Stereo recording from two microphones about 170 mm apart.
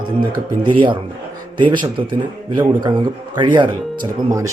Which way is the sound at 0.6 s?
30° right (ahead or behind).